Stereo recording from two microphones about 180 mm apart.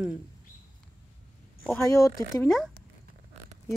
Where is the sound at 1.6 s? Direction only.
15° left (ahead or behind).